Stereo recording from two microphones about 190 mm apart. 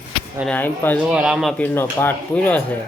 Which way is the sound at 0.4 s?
10° left (ahead or behind).